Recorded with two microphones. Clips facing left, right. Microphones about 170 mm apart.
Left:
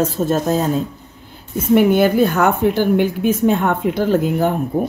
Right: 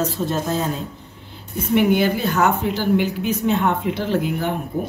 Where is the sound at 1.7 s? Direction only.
50° left (ahead or behind).